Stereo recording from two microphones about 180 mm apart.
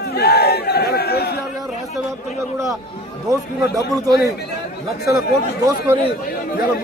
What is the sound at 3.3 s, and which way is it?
Speech, 20° right (ahead or behind).